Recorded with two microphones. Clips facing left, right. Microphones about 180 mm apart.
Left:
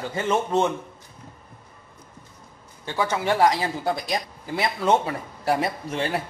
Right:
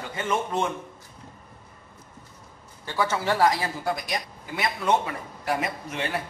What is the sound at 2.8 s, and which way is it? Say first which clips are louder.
Speech: left 1 dB; 15° left (ahead or behind).